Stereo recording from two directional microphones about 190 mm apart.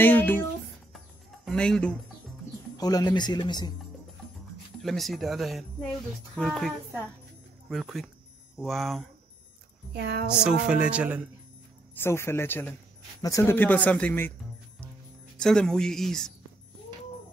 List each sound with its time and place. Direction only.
0.0 s speech: 10° left (ahead or behind)
0.9 s music: centre (ahead or behind)
2.8 s speech: 20° left (ahead or behind)
4.8 s speech: centre (ahead or behind)
7.7 s speech: centre (ahead or behind)
9.9 s speech: 60° right (ahead or behind)
10.4 s speech: 5° right (ahead or behind)
12.0 s speech: 15° left (ahead or behind)
15.3 s speech: 5° left (ahead or behind)